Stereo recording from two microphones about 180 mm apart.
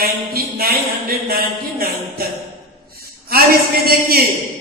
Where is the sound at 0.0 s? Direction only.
55° right (ahead or behind).